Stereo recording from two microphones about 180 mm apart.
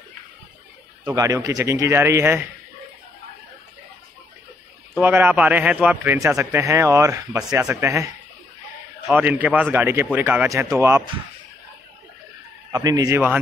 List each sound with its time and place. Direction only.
1.0 s a man's voice: 20° right (ahead or behind)
5.0 s a man's voice: 10° right (ahead or behind)
12.7 s speech: 20° right (ahead or behind)